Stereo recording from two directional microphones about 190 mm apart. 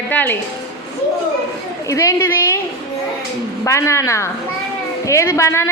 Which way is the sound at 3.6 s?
15° left (ahead or behind).